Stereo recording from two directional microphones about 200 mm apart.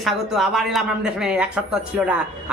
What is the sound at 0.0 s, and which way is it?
Speech, centre (ahead or behind).